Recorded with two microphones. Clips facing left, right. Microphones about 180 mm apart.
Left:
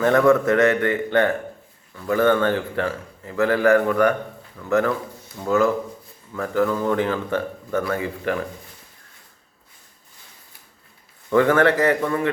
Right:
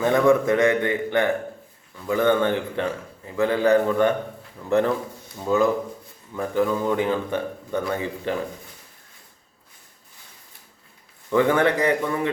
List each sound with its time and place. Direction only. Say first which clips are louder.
0.0 s a man's voice: left 2 dB; 15° right (ahead or behind); by 4.9 s 30° right (ahead or behind)
5.4 s a man's voice: left 1 dB; 15° right (ahead or behind)
11.3 s a man's voice: left 2 dB; 15° right (ahead or behind)